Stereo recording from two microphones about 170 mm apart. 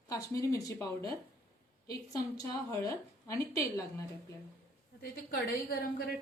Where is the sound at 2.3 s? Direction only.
20° left (ahead or behind).